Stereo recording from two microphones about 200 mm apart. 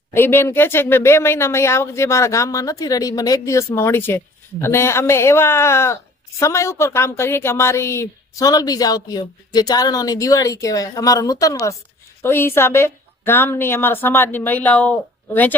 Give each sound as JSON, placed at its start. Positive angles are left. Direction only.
{"t": 0.1, "sound": "speech", "side_deg": 10}